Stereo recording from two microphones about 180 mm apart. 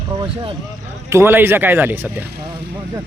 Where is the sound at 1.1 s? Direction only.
10° right (ahead or behind).